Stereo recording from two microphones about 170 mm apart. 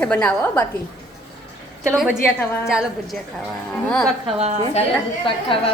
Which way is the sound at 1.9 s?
5° right (ahead or behind).